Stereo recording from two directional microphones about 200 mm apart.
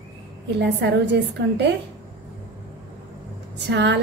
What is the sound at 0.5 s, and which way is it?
A woman's voice, 60° right (ahead or behind).